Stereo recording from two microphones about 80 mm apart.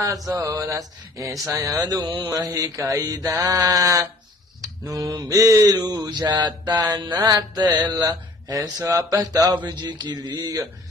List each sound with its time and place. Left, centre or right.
0.3 s mantra: right
5.1 s mantra: right
9.7 s mantra: right